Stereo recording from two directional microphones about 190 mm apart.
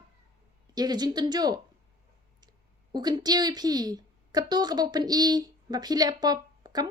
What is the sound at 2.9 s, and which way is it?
A woman's voice, 20° right (ahead or behind).